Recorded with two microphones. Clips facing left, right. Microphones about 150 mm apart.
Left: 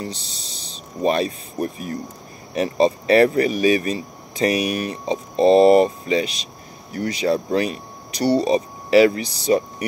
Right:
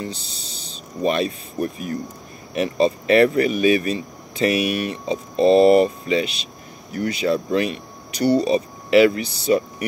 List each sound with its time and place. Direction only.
0.0 s speech: 35° left (ahead or behind)